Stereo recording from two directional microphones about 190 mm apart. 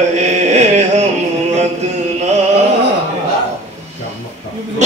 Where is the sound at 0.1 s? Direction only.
35° right (ahead or behind).